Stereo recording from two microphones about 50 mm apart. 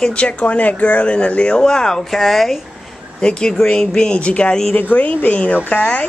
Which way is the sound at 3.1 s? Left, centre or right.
Centre.